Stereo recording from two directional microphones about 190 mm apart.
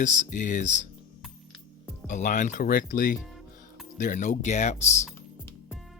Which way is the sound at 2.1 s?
40° left (ahead or behind).